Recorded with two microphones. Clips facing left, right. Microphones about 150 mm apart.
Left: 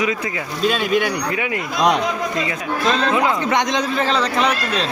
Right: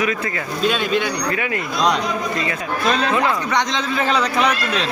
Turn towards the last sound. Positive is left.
turn(degrees=-10)  # may be behind; listen again after turning